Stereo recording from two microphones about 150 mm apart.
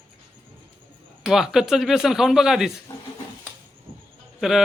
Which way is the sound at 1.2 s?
Centre (ahead or behind).